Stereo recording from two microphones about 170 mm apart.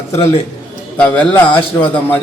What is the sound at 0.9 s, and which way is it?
Speech, 10° left (ahead or behind).